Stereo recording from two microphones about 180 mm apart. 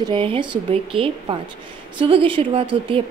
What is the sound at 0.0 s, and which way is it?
A woman's voice, 30° right (ahead or behind).